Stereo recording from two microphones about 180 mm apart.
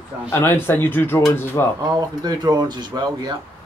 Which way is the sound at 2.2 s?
20° right (ahead or behind).